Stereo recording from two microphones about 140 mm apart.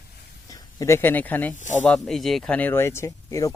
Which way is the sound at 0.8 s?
15° left (ahead or behind).